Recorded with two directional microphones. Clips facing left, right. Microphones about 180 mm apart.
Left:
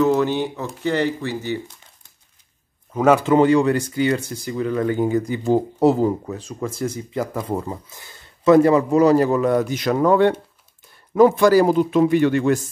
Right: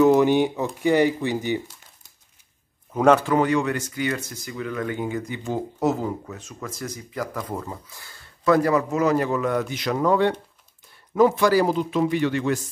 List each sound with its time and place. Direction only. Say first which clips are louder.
0.0 s speech: right 2 dB; 15° right (ahead or behind)
2.9 s speech: left 1 dB; 5° left (ahead or behind)
3.3 s speech: left 6 dB; 30° left (ahead or behind); by 12.5 s 50° left (ahead or behind)